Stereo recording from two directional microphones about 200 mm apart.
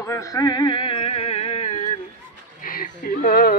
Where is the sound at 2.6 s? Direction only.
45° left (ahead or behind).